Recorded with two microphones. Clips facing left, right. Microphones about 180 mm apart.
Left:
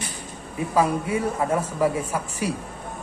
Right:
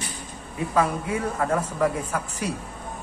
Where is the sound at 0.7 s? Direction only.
10° left (ahead or behind).